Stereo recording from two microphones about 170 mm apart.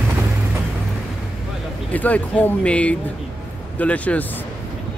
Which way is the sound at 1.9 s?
10° left (ahead or behind).